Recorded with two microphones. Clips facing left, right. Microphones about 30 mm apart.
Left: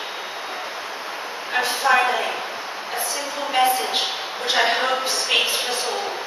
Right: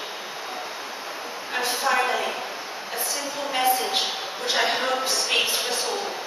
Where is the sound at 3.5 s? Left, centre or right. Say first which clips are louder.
Left 3 dB; centre.